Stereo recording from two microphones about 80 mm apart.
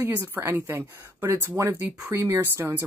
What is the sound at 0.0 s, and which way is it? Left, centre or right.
Speech, right.